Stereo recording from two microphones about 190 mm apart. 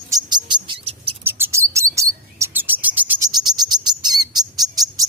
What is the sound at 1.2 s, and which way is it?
Chirp, 10° right (ahead or behind).